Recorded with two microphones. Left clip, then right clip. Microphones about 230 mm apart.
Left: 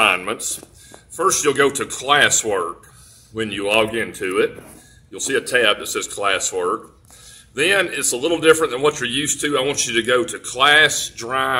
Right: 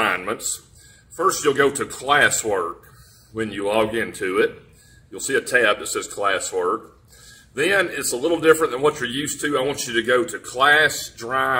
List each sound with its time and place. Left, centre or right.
0.0 s a man's voice: centre